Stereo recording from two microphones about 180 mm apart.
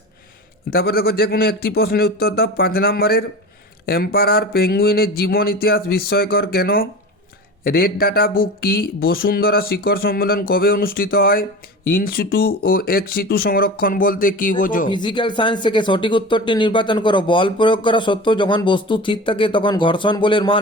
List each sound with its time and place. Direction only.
0.7 s speech: 60° left (ahead or behind)
14.8 s speech: 25° left (ahead or behind)